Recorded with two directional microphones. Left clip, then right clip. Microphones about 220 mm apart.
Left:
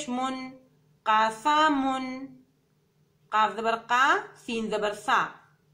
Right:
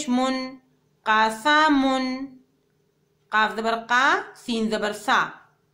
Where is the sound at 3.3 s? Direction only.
50° right (ahead or behind).